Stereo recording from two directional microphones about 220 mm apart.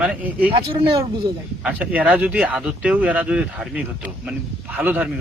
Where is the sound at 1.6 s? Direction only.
5° right (ahead or behind).